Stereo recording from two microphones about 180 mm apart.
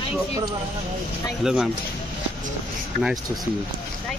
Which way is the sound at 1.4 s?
Centre (ahead or behind).